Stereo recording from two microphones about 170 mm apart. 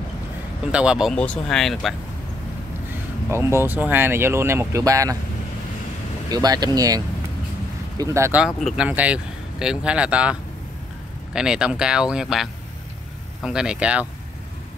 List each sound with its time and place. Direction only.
0.7 s speech: 5° right (ahead or behind)
3.3 s speech: 15° right (ahead or behind)
6.3 s speech: 25° right (ahead or behind)
8.0 s speech: 15° right (ahead or behind)
11.3 s speech: 5° right (ahead or behind)